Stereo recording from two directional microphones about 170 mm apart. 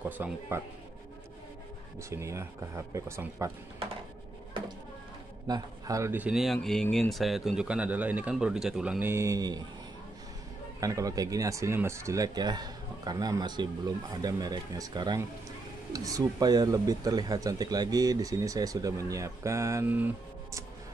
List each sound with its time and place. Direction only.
0.2 s speech: 15° right (ahead or behind)
2.0 s speech: 15° right (ahead or behind)
4.6 s a sound: 30° right (ahead or behind)
5.5 s speech: 20° right (ahead or behind)
10.8 s speech: 20° right (ahead or behind)